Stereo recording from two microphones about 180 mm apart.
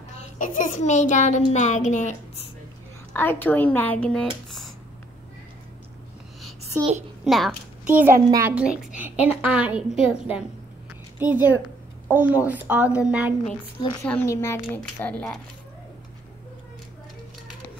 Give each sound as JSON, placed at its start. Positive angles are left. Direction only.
{"t": 0.4, "sound": "a child's voice", "side_deg": 45}
{"t": 3.1, "sound": "speech", "side_deg": 10}
{"t": 7.2, "sound": "a child's voice", "side_deg": 0}
{"t": 14.0, "sound": "speech", "side_deg": 10}